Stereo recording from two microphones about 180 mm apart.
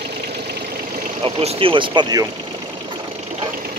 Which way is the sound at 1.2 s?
30° right (ahead or behind).